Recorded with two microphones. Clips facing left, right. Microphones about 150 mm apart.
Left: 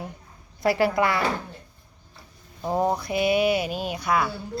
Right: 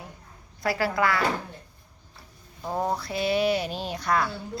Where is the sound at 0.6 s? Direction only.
25° left (ahead or behind).